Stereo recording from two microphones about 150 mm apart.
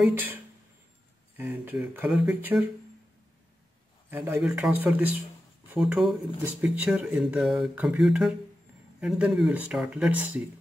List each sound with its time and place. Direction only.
0.0 s speech: 15° right (ahead or behind)
1.4 s speech: 10° right (ahead or behind)
4.1 s speech: 10° right (ahead or behind)